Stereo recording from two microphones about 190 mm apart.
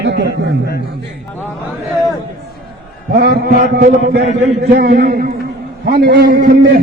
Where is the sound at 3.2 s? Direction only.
55° right (ahead or behind).